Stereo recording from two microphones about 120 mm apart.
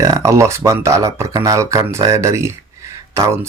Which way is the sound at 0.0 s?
25° right (ahead or behind).